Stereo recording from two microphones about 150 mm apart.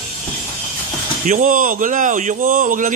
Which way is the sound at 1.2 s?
60° right (ahead or behind).